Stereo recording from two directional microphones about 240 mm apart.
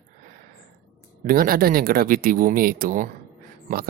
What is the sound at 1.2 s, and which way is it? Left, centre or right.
Speech, right.